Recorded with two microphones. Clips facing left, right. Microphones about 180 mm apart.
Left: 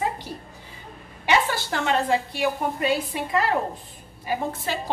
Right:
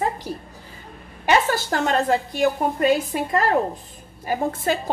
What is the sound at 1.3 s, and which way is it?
A woman's voice, 45° right (ahead or behind).